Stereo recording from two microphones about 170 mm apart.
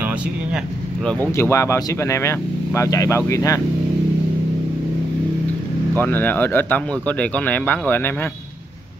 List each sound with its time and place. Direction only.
1.3 s speech: 15° left (ahead or behind)
5.9 s speech: 10° left (ahead or behind)